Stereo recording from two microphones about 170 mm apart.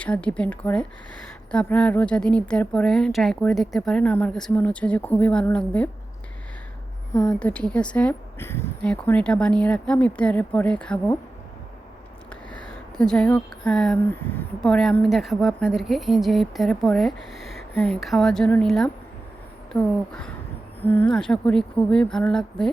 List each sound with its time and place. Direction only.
0.0 s speech: 5° left (ahead or behind)
7.1 s speech: 20° left (ahead or behind)
7.3 s speech: 5° left (ahead or behind)
12.3 s speech: 5° left (ahead or behind)